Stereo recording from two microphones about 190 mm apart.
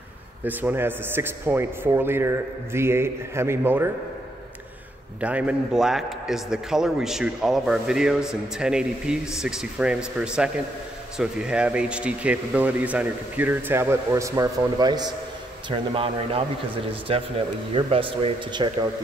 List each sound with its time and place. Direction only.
0.4 s speech: 10° right (ahead or behind)
5.2 s a man's voice: 5° right (ahead or behind); by 18.9 s 25° right (ahead or behind)